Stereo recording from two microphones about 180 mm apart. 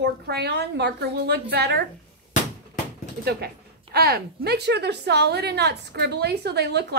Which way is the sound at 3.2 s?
60° right (ahead or behind).